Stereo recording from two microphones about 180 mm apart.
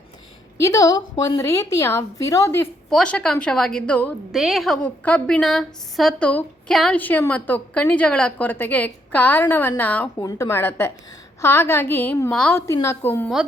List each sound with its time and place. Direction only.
0.6 s a woman's voice: 20° left (ahead or behind)
2.9 s a woman's voice: 5° left (ahead or behind)